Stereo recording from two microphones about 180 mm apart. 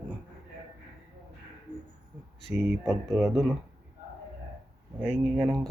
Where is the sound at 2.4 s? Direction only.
Centre (ahead or behind).